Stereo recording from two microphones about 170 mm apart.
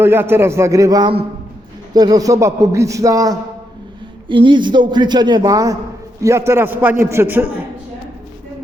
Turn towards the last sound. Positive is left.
turn(degrees=-10)  # may be behind; listen again after turning